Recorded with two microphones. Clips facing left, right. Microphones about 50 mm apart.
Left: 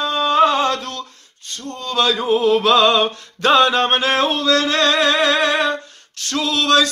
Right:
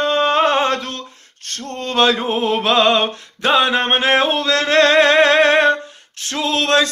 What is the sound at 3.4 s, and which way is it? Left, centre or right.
Music, centre.